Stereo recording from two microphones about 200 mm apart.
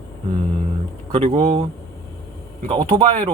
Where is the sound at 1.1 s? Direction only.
30° right (ahead or behind).